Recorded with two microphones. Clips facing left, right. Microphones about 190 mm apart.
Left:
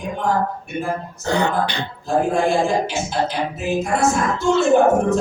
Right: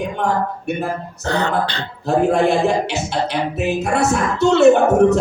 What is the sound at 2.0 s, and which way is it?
Music, 65° right (ahead or behind).